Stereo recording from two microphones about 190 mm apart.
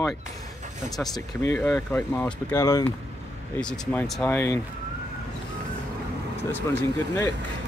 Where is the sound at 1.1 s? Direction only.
15° left (ahead or behind).